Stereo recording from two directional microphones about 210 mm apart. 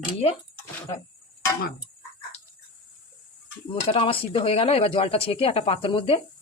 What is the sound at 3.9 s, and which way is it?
Speech, 25° left (ahead or behind).